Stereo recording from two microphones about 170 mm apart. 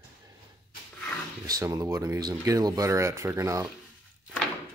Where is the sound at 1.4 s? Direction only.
20° right (ahead or behind).